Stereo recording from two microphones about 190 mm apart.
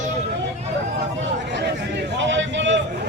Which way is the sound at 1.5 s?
65° right (ahead or behind).